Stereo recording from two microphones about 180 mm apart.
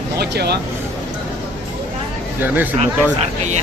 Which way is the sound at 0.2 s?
65° right (ahead or behind).